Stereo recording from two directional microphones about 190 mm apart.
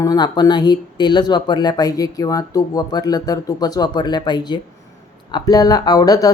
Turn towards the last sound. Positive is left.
turn(degrees=20)  # may be behind; listen again after turning